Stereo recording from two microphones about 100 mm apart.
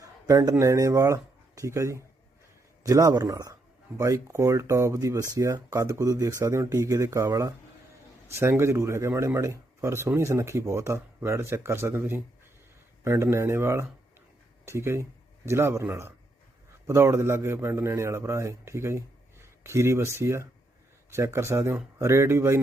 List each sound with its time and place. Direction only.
0.0 s a sound: 35° right (ahead or behind)
0.6 s speech: 35° right (ahead or behind)
13.3 s speech: 25° right (ahead or behind)